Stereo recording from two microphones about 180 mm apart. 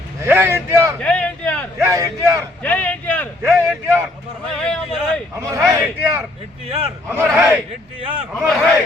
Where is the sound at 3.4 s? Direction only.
10° right (ahead or behind).